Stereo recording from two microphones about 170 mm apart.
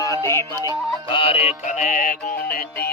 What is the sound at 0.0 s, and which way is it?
Yodeling, 20° left (ahead or behind).